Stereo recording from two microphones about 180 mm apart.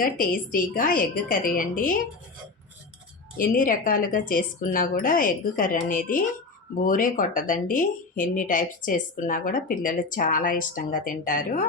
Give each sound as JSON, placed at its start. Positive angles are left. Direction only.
{"t": 0.0, "sound": "speech", "side_deg": 50}
{"t": 3.3, "sound": "speech", "side_deg": 50}